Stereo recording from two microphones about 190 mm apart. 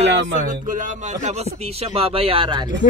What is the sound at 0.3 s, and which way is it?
Speech, 40° right (ahead or behind).